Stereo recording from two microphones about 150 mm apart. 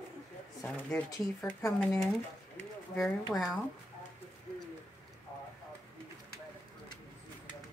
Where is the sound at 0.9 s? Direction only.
5° left (ahead or behind).